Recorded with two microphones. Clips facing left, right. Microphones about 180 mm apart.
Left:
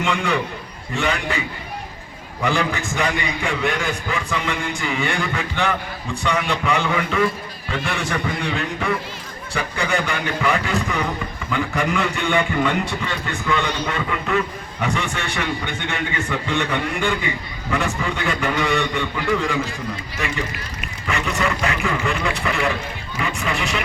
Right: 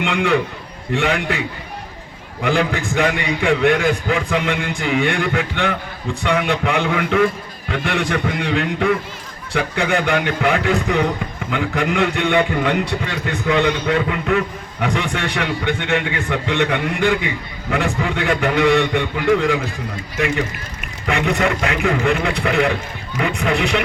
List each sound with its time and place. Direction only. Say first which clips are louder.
0.0 s a man's voice: right 4 dB; 60° right (ahead or behind)
2.4 s a man's voice: right 3 dB; 60° right (ahead or behind)